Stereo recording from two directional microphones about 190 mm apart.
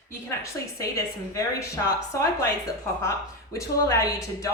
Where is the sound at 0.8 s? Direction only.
15° left (ahead or behind).